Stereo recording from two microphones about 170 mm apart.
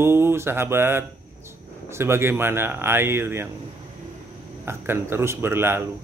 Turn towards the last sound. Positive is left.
turn(degrees=-15)  # may be behind; listen again after turning